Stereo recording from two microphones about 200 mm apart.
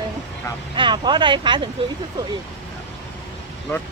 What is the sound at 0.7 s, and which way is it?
Speech, 25° right (ahead or behind).